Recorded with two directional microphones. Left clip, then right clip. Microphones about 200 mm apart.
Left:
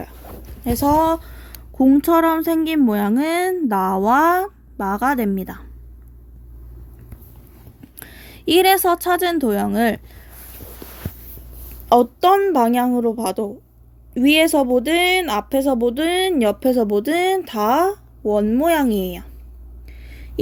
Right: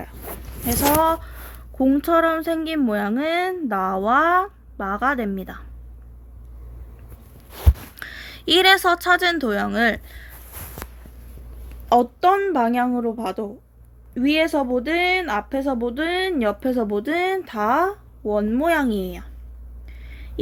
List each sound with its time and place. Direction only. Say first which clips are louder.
0.6 s speech: left 2 dB; 30° left (ahead or behind)
7.9 s a woman's voice: right 6 dB; 25° left (ahead or behind)
11.9 s speech: left 3 dB; 20° left (ahead or behind)
14.6 s a woman's voice: left 4 dB; 15° left (ahead or behind)
20.0 s a sound: left 1 dB; 20° left (ahead or behind)